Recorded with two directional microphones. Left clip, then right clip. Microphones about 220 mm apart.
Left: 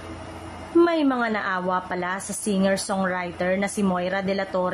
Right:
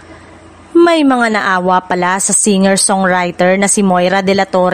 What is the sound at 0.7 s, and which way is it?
A woman's voice, 45° right (ahead or behind).